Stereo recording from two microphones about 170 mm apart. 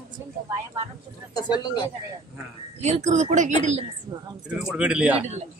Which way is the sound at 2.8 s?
40° right (ahead or behind).